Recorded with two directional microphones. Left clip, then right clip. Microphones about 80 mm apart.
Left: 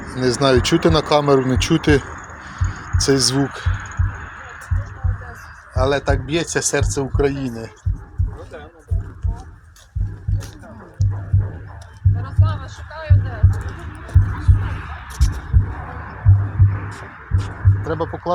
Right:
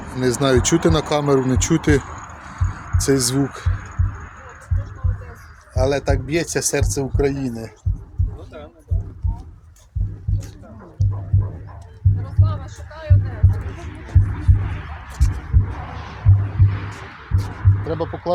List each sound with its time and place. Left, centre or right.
0.1 s speech: right
2.6 s a sound: right
3.4 s speech: centre
5.7 s speech: centre
12.1 s music: right
13.6 s heart sounds: right
15.7 s heart sounds: right
16.6 s music: right
17.8 s speech: centre